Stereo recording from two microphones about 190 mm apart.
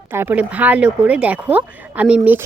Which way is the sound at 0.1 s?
10° right (ahead or behind).